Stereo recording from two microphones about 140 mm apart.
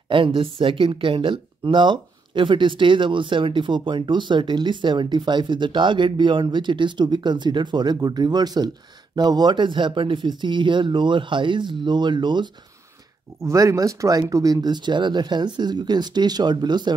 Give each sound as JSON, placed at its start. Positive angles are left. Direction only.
{"t": 0.1, "sound": "speech", "side_deg": -35}
{"t": 13.4, "sound": "speech", "side_deg": -20}